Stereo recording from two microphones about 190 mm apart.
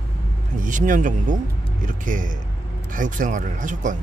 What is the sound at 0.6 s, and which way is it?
Speech, 45° right (ahead or behind).